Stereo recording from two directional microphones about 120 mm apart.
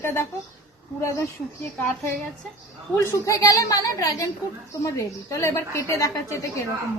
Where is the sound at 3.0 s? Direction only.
25° left (ahead or behind).